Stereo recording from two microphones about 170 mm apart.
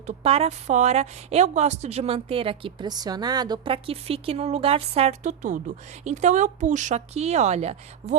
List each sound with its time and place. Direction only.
0.2 s a woman's voice: 35° right (ahead or behind)